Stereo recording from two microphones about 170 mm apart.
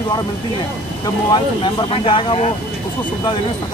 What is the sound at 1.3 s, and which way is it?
Speech, 25° left (ahead or behind).